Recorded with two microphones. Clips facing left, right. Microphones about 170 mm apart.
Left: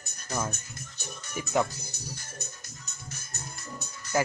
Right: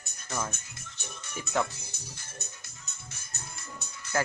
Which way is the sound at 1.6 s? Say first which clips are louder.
Left 4 dB; 40° left (ahead or behind).